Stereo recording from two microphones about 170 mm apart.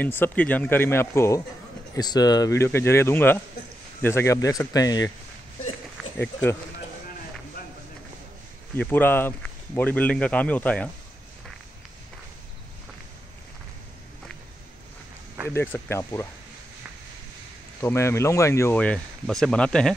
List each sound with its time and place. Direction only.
0.0 s a man's voice: 10° left (ahead or behind)
6.1 s a man's voice: 10° left (ahead or behind)
8.7 s a man's voice: 10° left (ahead or behind)
15.5 s a man's voice: 15° left (ahead or behind)
17.8 s a man's voice: 15° left (ahead or behind)